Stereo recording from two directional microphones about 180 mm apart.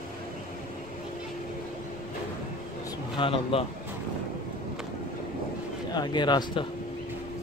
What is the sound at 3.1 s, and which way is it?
Speech, 30° left (ahead or behind).